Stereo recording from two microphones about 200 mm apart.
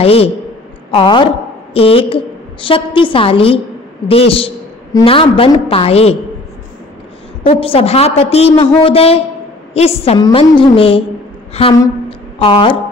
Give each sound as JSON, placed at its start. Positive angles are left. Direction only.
{"t": 0.0, "sound": "a woman's voice", "side_deg": 30}
{"t": 7.4, "sound": "a woman's voice", "side_deg": 30}
{"t": 11.8, "sound": "a sound", "side_deg": 25}